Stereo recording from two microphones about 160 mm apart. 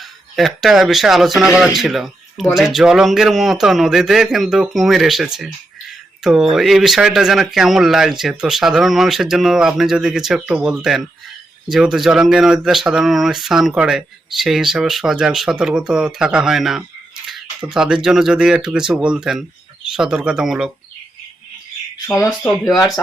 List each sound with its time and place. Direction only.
0.3 s speech: centre (ahead or behind)
22.0 s speech: 20° left (ahead or behind)